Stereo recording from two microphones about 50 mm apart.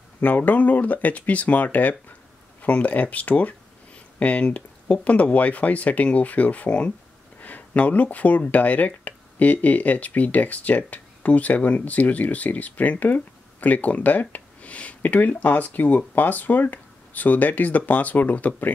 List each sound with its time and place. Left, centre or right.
0.2 s speech: left
14.3 s a sound: left
15.0 s speech: left